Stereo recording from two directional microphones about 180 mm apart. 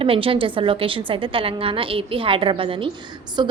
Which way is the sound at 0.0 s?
30° right (ahead or behind).